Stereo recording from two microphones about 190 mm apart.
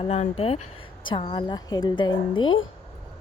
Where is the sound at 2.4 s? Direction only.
90° left.